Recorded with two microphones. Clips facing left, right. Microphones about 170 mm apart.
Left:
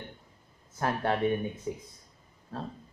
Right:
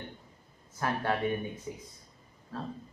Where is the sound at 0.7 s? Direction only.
25° left (ahead or behind).